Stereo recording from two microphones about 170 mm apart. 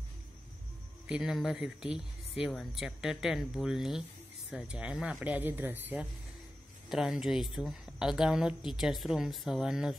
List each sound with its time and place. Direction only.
1.0 s a woman's voice: 5° right (ahead or behind)